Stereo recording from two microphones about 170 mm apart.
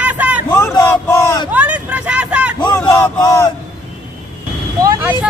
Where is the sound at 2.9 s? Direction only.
15° left (ahead or behind).